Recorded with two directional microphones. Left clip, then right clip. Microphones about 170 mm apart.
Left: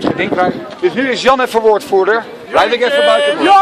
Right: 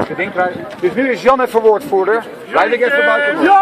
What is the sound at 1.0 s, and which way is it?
A man's voice, 20° left (ahead or behind).